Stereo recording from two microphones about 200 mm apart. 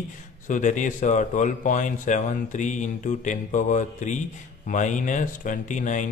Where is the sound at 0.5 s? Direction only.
40° left (ahead or behind).